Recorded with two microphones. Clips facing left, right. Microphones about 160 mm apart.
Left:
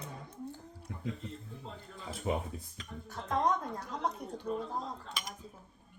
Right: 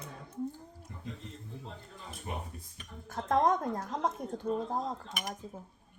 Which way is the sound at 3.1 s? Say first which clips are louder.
Right 4 dB; 50° right (ahead or behind).